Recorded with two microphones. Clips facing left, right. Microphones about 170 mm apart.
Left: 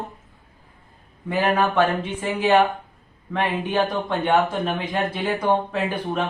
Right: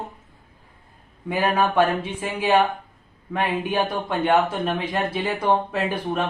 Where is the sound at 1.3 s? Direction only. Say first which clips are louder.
Left 1 dB; 10° right (ahead or behind).